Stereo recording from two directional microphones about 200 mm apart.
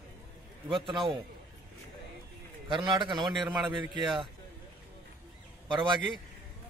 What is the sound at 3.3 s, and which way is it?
Speech, 5° right (ahead or behind).